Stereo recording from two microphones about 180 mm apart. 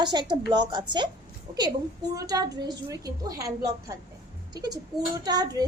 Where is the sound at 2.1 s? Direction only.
20° right (ahead or behind).